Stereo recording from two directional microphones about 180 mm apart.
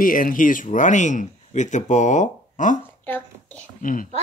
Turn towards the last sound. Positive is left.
turn(degrees=50)  # may be behind; listen again after turning